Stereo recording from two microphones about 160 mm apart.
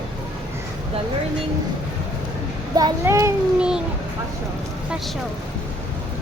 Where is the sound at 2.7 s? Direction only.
20° right (ahead or behind).